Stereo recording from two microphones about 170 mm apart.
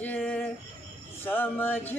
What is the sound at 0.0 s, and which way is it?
Music, 10° left (ahead or behind).